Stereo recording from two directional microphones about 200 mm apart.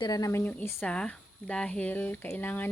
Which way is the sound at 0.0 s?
20° left (ahead or behind).